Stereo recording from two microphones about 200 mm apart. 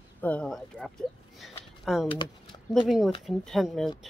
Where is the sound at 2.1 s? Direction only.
25° left (ahead or behind).